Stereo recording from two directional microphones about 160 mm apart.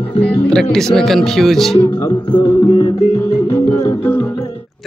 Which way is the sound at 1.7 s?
25° left (ahead or behind).